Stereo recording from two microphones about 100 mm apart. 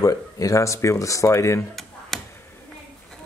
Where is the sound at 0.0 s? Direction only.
35° left (ahead or behind).